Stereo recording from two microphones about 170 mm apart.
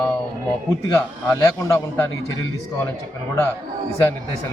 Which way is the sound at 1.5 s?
20° left (ahead or behind).